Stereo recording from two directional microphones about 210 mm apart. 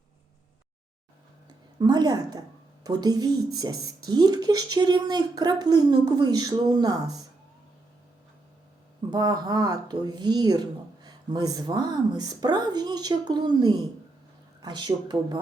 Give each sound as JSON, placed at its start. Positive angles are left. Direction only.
{"t": 1.8, "sound": "speech", "side_deg": -20}
{"t": 9.0, "sound": "speech", "side_deg": -20}